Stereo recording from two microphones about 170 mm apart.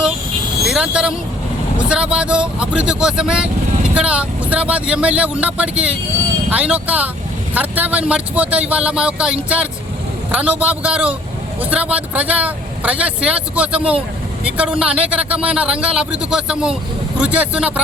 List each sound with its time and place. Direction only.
0.6 s vehicle: 5° right (ahead or behind)
1.9 s a man's voice: 5° right (ahead or behind)